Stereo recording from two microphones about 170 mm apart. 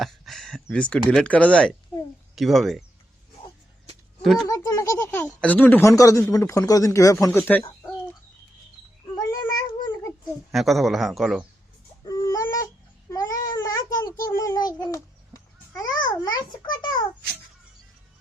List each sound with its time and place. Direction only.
0.0 s a sound: centre (ahead or behind)
1.1 s a man's voice: 5° left (ahead or behind)
4.2 s speech: centre (ahead or behind)
4.4 s speech: 20° left (ahead or behind)
9.1 s a sound: 25° left (ahead or behind)
10.5 s a man's voice: centre (ahead or behind)
12.0 s baby cry: 20° left (ahead or behind)
13.1 s a sound: 20° left (ahead or behind)
14.8 s babbling: 20° left (ahead or behind)